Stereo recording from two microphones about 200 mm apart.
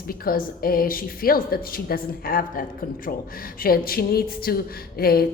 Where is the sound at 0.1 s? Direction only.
45° left (ahead or behind).